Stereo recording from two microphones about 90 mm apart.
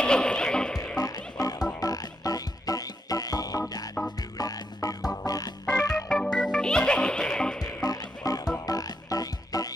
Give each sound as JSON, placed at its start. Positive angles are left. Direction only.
{"t": 0.0, "sound": "music", "side_deg": 10}
{"t": 0.9, "sound": "music", "side_deg": 45}
{"t": 5.1, "sound": "organ", "side_deg": 45}
{"t": 6.0, "sound": "music", "side_deg": 10}
{"t": 7.6, "sound": "music", "side_deg": 45}